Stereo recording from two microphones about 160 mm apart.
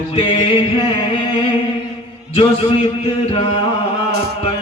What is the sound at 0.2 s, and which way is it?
Mantra, 35° left (ahead or behind).